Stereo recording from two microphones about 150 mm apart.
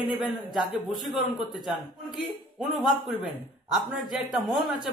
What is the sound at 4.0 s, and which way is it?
Speech, centre (ahead or behind).